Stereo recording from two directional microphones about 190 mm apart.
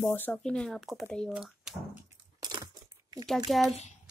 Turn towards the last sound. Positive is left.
turn(degrees=0)  # may be behind; listen again after turning